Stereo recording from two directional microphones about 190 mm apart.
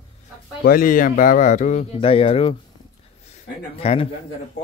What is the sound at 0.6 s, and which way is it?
Speech, 50° left (ahead or behind).